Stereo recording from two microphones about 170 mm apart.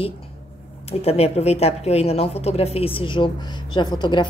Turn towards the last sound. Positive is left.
turn(degrees=25)  # may be behind; listen again after turning